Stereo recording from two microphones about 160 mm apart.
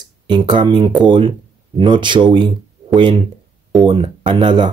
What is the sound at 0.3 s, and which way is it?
Speech, 30° right (ahead or behind).